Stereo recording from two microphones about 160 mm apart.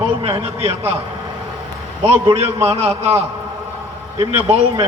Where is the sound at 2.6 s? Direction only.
40° right (ahead or behind).